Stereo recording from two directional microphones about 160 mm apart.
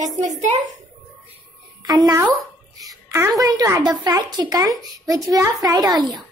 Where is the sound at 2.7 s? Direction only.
20° right (ahead or behind).